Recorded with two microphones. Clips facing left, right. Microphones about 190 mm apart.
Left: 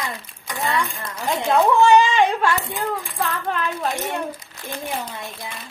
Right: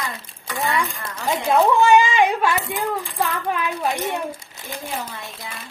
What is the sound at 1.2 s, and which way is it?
Speech, centre (ahead or behind).